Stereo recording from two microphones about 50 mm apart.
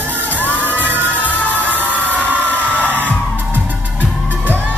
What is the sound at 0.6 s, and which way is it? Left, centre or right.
Children shouting, right.